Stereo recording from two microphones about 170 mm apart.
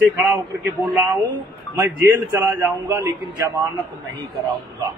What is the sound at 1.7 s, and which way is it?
Speech, 10° right (ahead or behind).